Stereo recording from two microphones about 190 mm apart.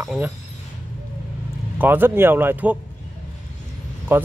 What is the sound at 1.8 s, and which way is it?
Speech, 10° right (ahead or behind).